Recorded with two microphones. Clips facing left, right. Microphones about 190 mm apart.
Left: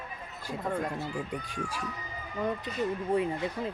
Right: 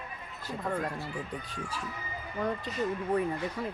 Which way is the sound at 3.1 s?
25° left (ahead or behind).